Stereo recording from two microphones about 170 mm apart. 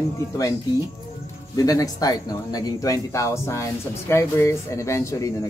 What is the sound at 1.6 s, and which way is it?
A man's voice, 20° left (ahead or behind).